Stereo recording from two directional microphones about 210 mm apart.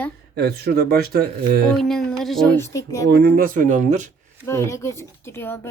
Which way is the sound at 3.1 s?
45° right (ahead or behind).